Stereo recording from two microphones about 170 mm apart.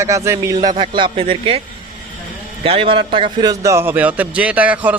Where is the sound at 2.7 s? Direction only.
30° right (ahead or behind).